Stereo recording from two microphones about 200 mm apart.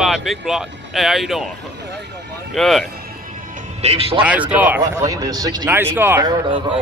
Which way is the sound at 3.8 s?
30° right (ahead or behind).